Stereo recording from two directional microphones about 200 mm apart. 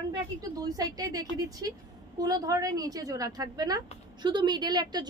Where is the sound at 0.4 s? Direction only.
20° right (ahead or behind).